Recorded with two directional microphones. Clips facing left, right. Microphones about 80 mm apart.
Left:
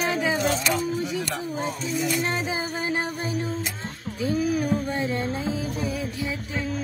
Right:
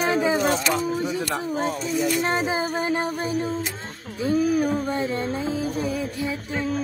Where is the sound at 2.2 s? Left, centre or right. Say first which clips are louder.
Right 4 dB; right.